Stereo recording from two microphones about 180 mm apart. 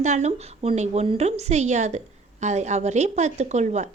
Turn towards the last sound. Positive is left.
turn(degrees=-40)  # may be behind; listen again after turning